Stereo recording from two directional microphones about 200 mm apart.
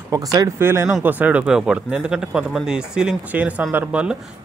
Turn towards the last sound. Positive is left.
turn(degrees=-10)  # may be behind; listen again after turning